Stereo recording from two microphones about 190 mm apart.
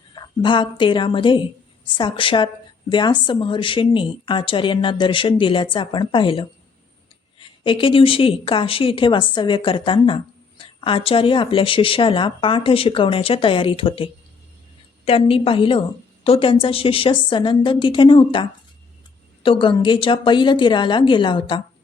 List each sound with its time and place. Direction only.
0.1 s a woman's voice: 25° left (ahead or behind)